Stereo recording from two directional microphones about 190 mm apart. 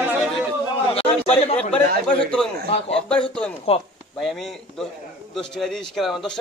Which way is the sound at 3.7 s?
30° left (ahead or behind).